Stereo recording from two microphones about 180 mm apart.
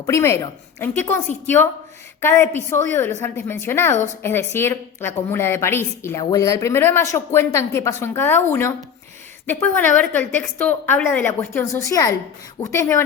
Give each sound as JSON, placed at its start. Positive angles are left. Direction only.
{"t": 0.0, "sound": "a woman's voice", "side_deg": 15}
{"t": 2.2, "sound": "a woman's voice", "side_deg": 15}